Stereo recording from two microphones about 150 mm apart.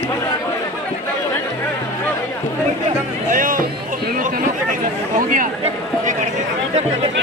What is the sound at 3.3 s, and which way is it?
Speech, 65° right (ahead or behind).